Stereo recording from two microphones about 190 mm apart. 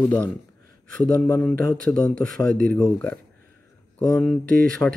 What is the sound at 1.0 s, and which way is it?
Speech, 5° left (ahead or behind).